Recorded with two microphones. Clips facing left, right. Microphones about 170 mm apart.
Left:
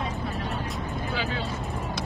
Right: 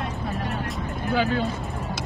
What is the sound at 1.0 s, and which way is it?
Music, 55° right (ahead or behind).